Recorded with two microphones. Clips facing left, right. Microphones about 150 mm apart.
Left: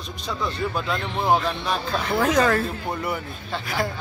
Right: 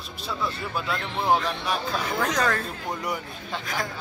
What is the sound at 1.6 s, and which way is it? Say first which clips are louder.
Speech: left 2 dB; 10° right (ahead or behind).